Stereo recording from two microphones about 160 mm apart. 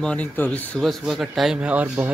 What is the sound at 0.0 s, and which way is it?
Speech, 10° left (ahead or behind).